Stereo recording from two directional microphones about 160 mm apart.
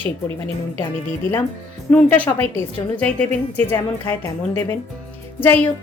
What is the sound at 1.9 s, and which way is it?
Speech, 10° left (ahead or behind).